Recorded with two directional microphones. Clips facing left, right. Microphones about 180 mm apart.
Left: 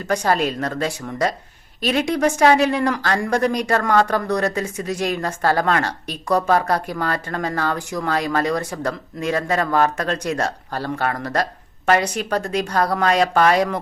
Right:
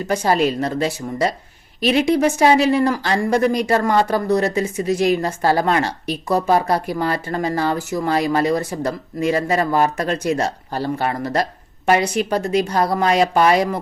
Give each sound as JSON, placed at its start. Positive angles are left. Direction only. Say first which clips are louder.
{"t": 0.1, "sound": "speech", "louder": "right 2 dB", "side_deg": -10}